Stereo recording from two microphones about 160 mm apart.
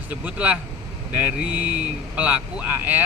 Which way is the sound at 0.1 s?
10° right (ahead or behind).